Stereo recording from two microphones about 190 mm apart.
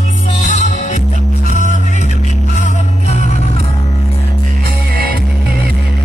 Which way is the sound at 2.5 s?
40° left (ahead or behind).